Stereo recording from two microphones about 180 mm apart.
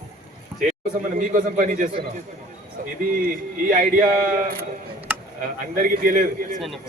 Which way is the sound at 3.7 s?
50° right (ahead or behind).